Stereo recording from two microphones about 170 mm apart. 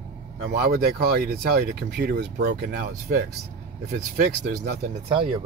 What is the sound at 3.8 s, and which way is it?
Speech, 75° right (ahead or behind).